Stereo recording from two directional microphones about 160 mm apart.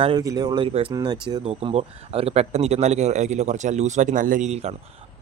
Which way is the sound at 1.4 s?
40° right (ahead or behind).